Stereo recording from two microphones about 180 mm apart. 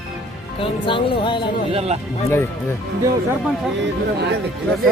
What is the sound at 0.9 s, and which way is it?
Speech, 25° left (ahead or behind).